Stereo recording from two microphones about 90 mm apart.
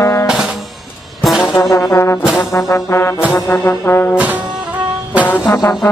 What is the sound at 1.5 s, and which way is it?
Brass instrument, 30° left (ahead or behind).